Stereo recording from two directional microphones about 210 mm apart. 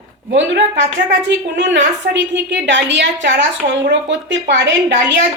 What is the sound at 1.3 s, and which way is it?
Speech, 55° right (ahead or behind).